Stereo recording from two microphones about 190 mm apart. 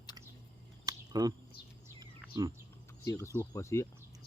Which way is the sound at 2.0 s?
20° right (ahead or behind).